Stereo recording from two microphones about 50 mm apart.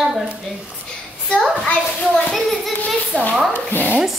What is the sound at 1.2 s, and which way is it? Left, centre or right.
Speech, centre.